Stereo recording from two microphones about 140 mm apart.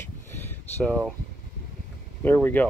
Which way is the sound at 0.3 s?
15° left (ahead or behind).